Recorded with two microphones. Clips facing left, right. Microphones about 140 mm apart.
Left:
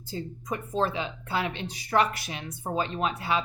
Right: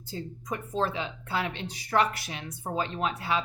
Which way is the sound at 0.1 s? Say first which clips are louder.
Left 2 dB; 15° left (ahead or behind).